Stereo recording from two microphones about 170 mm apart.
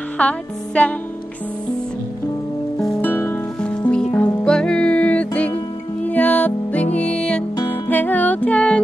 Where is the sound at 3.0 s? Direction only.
10° left (ahead or behind).